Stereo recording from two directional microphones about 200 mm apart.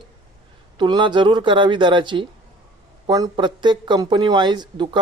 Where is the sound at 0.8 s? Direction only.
25° right (ahead or behind).